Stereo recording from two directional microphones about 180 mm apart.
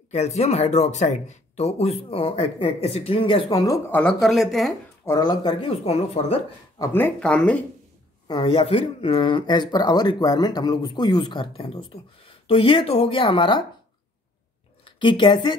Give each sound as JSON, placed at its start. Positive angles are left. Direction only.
{"t": 0.1, "sound": "speech", "side_deg": 35}
{"t": 4.0, "sound": "speech", "side_deg": 0}
{"t": 5.0, "sound": "speech", "side_deg": 20}
{"t": 6.8, "sound": "speech", "side_deg": 10}
{"t": 8.3, "sound": "speech", "side_deg": 30}
{"t": 14.9, "sound": "a woman's voice", "side_deg": 25}